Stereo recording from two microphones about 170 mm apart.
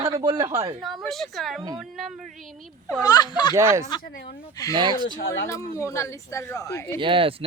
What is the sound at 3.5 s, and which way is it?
Speech, 15° right (ahead or behind).